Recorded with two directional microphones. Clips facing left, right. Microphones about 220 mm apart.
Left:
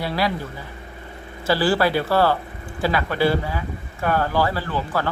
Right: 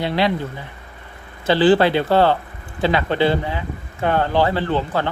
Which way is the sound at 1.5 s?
20° right (ahead or behind).